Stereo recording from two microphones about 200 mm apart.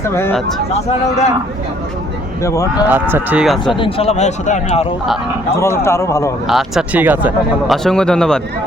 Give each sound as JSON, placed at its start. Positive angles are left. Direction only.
{"t": 0.0, "sound": "a man's voice", "side_deg": 10}
{"t": 0.7, "sound": "speech", "side_deg": 35}
{"t": 2.4, "sound": "a man's voice", "side_deg": 15}
{"t": 2.8, "sound": "speech", "side_deg": -10}
{"t": 3.8, "sound": "speech", "side_deg": 30}
{"t": 5.5, "sound": "a man's voice", "side_deg": 15}
{"t": 6.5, "sound": "speech", "side_deg": 0}
{"t": 7.9, "sound": "speech", "side_deg": 5}